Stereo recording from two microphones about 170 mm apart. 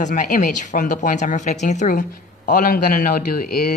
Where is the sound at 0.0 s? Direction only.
50° left (ahead or behind).